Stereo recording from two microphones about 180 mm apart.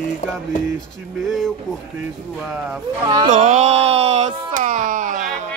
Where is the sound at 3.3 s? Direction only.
40° right (ahead or behind).